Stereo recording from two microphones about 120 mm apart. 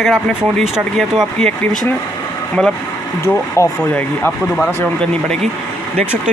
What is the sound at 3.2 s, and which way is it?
Speech, 20° left (ahead or behind).